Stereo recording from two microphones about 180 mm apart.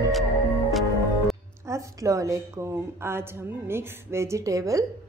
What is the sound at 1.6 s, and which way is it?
A woman's voice, 15° right (ahead or behind).